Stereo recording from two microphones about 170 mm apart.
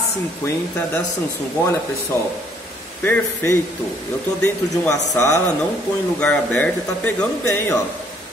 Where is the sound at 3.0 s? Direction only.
10° left (ahead or behind).